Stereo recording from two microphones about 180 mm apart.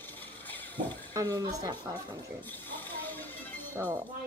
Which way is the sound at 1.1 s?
20° right (ahead or behind).